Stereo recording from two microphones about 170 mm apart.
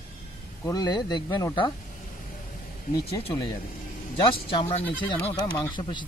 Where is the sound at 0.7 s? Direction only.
20° left (ahead or behind).